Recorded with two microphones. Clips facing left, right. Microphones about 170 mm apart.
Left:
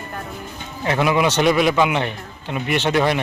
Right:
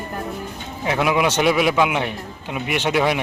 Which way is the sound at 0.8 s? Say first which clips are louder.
Left 1 dB; 5° right (ahead or behind).